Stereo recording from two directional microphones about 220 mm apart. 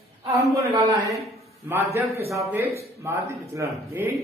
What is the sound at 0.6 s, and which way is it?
A man's voice, 15° right (ahead or behind).